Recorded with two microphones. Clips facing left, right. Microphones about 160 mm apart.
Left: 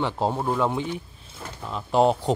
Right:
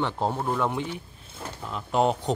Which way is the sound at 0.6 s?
20° left (ahead or behind).